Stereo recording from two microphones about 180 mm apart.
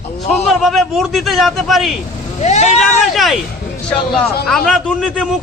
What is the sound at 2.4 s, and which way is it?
Speech, 40° left (ahead or behind).